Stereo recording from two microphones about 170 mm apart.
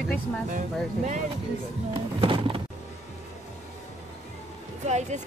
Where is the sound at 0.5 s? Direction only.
45° right (ahead or behind).